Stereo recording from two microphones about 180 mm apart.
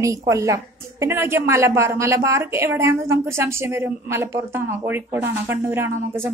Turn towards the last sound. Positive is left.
turn(degrees=-10)  # may be behind; listen again after turning